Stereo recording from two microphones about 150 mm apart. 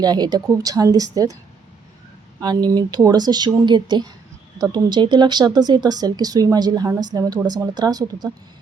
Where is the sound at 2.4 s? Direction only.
25° right (ahead or behind).